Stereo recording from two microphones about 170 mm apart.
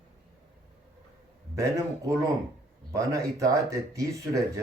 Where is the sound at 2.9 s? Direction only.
20° right (ahead or behind).